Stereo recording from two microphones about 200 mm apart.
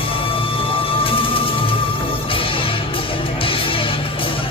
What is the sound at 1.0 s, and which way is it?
Music, 25° left (ahead or behind).